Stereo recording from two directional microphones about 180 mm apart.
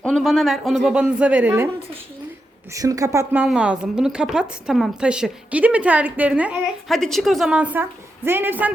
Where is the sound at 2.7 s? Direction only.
20° right (ahead or behind).